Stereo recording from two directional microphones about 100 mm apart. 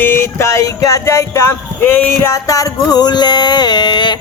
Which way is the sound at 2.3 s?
35° left (ahead or behind).